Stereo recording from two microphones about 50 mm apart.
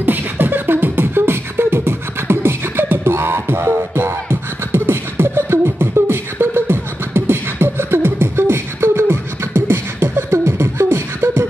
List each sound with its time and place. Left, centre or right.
0.0 s beatboxing: right